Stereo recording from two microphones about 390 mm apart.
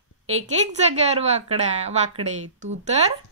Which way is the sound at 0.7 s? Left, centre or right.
Centre.